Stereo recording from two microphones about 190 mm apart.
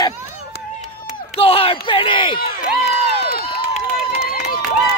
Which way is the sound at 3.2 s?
55° left (ahead or behind).